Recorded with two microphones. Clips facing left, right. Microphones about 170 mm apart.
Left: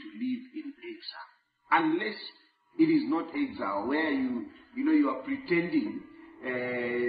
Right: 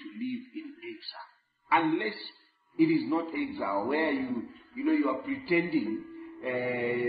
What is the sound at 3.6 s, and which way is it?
A man's voice, 15° right (ahead or behind).